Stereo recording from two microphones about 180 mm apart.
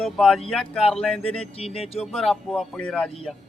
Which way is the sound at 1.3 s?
35° left (ahead or behind).